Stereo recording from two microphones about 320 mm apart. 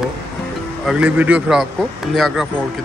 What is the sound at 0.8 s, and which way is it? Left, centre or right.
Speech, centre.